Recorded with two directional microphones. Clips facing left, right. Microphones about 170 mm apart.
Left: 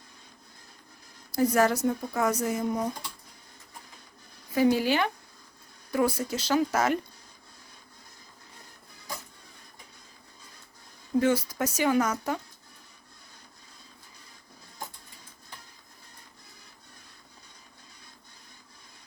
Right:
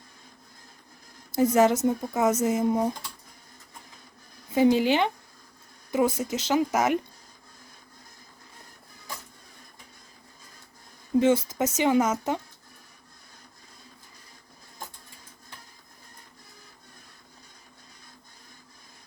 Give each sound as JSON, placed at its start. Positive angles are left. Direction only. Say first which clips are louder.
{"t": 1.3, "sound": "speech", "louder": "right 3 dB", "side_deg": -20}
{"t": 4.5, "sound": "speech", "louder": "right 3 dB", "side_deg": -20}
{"t": 11.2, "sound": "speech", "louder": "right 3 dB", "side_deg": -25}